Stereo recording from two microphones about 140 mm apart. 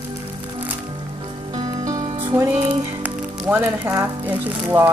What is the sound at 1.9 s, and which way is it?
Music, 20° right (ahead or behind).